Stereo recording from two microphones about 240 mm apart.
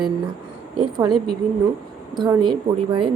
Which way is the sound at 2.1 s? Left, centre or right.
Centre.